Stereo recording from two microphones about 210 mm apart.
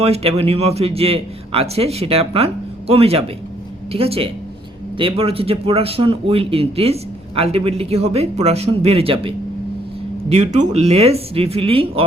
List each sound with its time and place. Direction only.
0.0 s speech: 30° right (ahead or behind)